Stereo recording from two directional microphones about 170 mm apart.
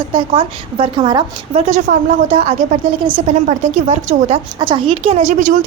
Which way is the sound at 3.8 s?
40° right (ahead or behind).